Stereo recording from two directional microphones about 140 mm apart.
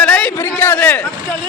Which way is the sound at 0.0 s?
5° left (ahead or behind).